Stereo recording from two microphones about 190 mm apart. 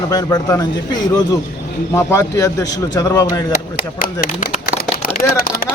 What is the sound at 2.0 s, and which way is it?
Speech, 15° left (ahead or behind).